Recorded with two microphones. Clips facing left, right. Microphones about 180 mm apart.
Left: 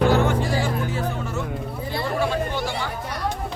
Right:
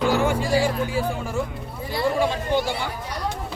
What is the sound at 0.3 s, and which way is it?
Music, 10° right (ahead or behind).